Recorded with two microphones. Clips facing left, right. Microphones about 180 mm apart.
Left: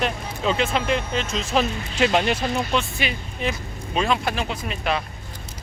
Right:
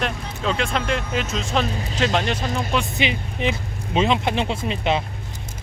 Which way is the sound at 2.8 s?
20° right (ahead or behind).